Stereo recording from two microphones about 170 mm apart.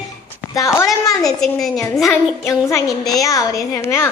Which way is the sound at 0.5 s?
20° left (ahead or behind).